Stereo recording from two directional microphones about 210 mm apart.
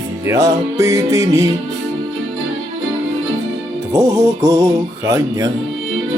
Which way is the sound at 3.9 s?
15° right (ahead or behind).